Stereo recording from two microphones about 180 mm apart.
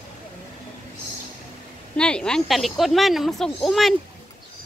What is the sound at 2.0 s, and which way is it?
Speech, 5° left (ahead or behind).